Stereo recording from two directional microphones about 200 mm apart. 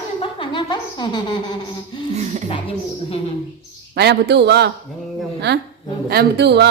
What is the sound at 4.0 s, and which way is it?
A man's voice, 55° right (ahead or behind).